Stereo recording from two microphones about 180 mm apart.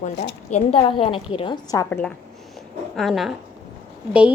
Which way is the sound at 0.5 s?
30° left (ahead or behind).